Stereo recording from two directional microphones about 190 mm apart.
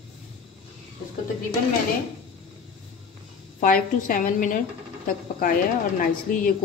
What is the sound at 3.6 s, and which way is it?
Speech, 45° left (ahead or behind).